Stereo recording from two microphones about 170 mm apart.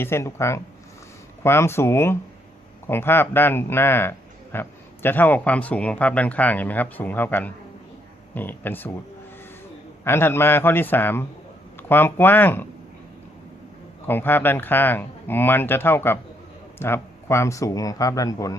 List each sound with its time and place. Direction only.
0.0 s speech: 15° left (ahead or behind)
10.0 s speech: 15° left (ahead or behind)
14.1 s a man's voice: 10° left (ahead or behind)